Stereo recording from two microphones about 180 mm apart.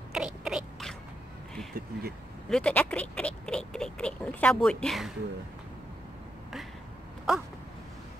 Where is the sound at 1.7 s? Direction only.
60° right (ahead or behind).